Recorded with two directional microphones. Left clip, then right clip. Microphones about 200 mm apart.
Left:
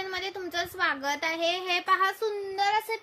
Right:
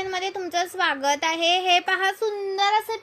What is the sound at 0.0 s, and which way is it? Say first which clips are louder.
A woman's voice: right 6 dB; 15° right (ahead or behind).